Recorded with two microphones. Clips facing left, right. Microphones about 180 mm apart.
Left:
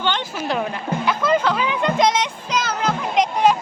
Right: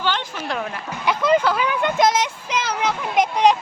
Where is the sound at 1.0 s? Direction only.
15° right (ahead or behind).